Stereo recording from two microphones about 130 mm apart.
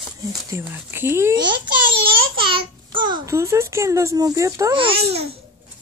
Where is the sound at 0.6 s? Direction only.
15° right (ahead or behind).